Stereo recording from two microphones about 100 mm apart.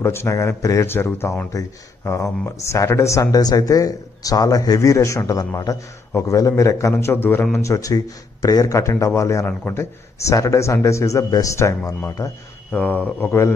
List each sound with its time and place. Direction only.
0.0 s speech: 25° left (ahead or behind)
1.5 s speech: 30° left (ahead or behind)
12.7 s speech: 15° left (ahead or behind)